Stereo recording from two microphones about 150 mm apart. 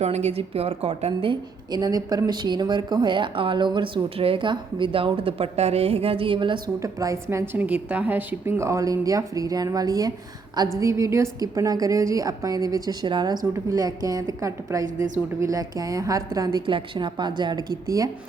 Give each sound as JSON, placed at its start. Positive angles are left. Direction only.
{"t": 0.0, "sound": "a woman's voice", "side_deg": -45}
{"t": 6.7, "sound": "a woman's voice", "side_deg": -20}